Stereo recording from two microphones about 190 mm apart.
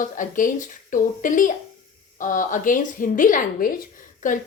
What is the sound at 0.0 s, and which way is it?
A woman's voice, 45° left (ahead or behind).